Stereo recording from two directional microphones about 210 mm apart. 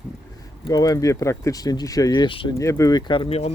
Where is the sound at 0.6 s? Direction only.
20° left (ahead or behind).